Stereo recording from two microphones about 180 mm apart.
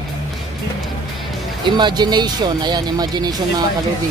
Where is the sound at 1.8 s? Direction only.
25° right (ahead or behind).